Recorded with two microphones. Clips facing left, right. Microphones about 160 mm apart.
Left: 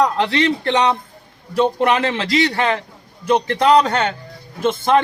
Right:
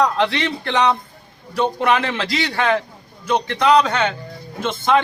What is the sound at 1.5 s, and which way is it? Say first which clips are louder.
Speech: left 2 dB; 30° left (ahead or behind).